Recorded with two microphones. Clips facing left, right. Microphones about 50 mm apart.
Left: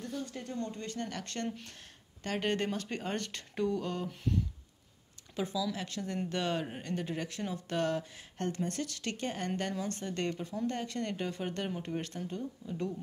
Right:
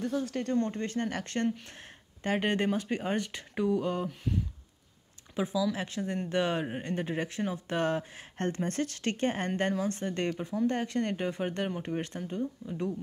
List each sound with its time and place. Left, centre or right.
0.0 s speech: right
0.6 s speech: right; by 4.1 s centre
5.3 s speech: centre
10.3 s speech: centre
10.7 s speech: right